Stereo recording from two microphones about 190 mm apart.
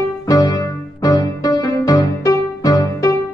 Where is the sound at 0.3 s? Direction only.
20° left (ahead or behind).